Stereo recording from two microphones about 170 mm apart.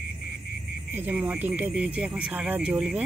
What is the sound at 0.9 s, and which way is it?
Speech, 10° right (ahead or behind).